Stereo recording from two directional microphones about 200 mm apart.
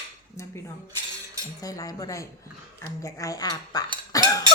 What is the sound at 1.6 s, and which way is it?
Speech, 15° left (ahead or behind).